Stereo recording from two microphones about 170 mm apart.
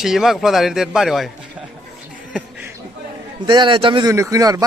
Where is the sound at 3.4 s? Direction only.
30° right (ahead or behind).